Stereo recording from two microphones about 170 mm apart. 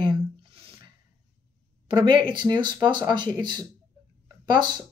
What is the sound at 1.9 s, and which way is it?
Speech, 25° right (ahead or behind).